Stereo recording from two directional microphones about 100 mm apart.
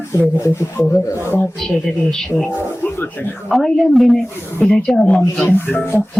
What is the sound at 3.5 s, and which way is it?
Speech, centre (ahead or behind).